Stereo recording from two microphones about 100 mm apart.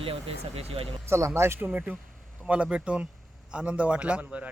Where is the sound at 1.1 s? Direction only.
25° right (ahead or behind).